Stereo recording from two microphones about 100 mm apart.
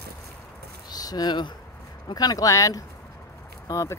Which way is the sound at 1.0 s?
40° left (ahead or behind).